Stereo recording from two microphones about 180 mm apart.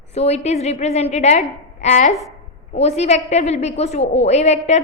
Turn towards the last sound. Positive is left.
turn(degrees=40)  # may be behind; listen again after turning